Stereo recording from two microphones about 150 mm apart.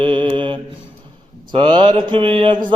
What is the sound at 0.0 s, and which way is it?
Mantra, 35° right (ahead or behind).